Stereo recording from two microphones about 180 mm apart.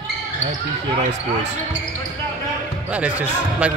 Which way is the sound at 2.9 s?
10° right (ahead or behind).